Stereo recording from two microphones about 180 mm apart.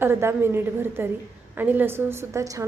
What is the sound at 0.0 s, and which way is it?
A woman's voice, 15° right (ahead or behind).